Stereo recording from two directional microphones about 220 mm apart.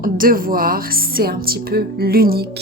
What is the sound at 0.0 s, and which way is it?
Speech, 40° right (ahead or behind).